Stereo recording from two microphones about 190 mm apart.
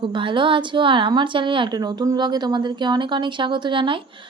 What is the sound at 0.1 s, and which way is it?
Speech, 25° right (ahead or behind).